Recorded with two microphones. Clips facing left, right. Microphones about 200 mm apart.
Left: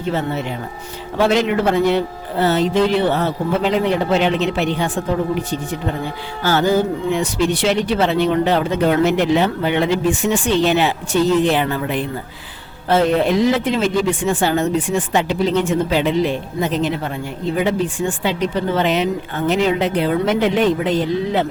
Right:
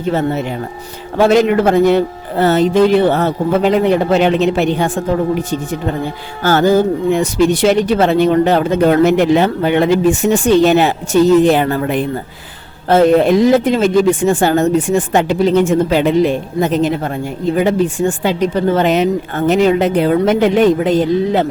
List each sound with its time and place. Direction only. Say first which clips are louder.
1.2 s speech: right 5 dB; 45° right (ahead or behind)